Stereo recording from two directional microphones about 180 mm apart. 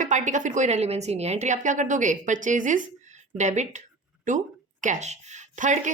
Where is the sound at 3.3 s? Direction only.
40° right (ahead or behind).